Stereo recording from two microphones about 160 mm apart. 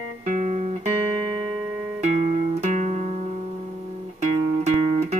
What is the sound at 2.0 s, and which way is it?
Music, 45° right (ahead or behind).